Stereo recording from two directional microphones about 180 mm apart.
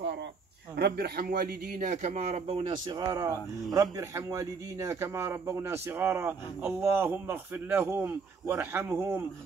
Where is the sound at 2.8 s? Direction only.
20° right (ahead or behind).